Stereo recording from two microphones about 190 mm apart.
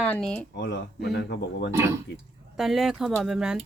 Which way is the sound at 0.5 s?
60° left (ahead or behind).